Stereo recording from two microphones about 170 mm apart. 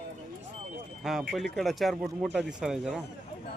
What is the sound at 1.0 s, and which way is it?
Speech, centre (ahead or behind).